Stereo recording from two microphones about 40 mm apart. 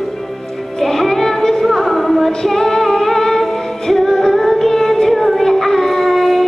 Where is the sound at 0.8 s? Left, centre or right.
Centre.